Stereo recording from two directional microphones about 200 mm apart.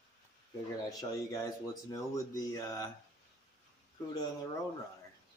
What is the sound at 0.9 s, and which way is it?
Speech, 20° left (ahead or behind).